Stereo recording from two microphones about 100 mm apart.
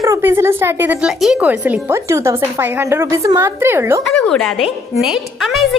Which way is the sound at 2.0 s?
30° right (ahead or behind).